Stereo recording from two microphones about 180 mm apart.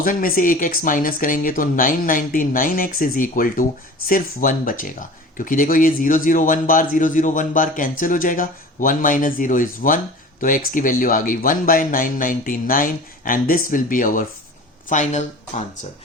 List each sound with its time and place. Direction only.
0.0 s speech: 50° left (ahead or behind)